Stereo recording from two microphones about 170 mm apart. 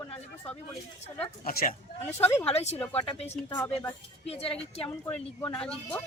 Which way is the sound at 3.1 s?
40° left (ahead or behind).